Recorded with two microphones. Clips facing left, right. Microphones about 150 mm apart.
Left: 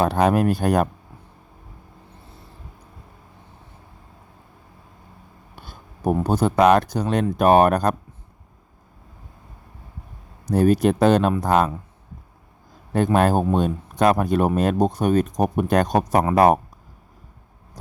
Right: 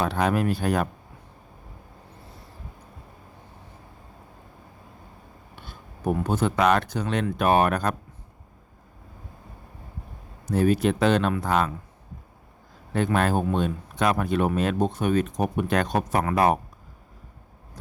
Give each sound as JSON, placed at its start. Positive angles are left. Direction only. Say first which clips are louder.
{"t": 0.0, "sound": "speech", "louder": "left 5 dB", "side_deg": 45}
{"t": 5.5, "sound": "speech", "louder": "left 2 dB", "side_deg": 40}
{"t": 10.4, "sound": "speech", "louder": "left 4 dB", "side_deg": 40}
{"t": 13.1, "sound": "speech", "louder": "left 5 dB", "side_deg": 40}